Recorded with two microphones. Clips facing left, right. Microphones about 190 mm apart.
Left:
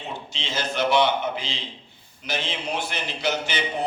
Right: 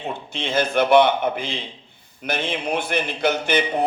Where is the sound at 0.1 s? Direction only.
55° right (ahead or behind).